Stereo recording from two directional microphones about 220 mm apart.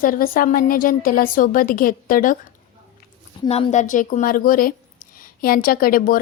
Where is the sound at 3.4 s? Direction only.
25° left (ahead or behind).